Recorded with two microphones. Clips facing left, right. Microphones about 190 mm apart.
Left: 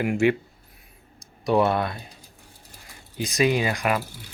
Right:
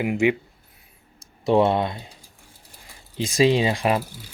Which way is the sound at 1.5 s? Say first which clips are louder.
Right 2 dB; 25° right (ahead or behind).